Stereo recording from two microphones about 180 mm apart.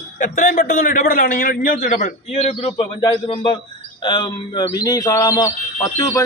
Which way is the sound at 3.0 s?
25° left (ahead or behind).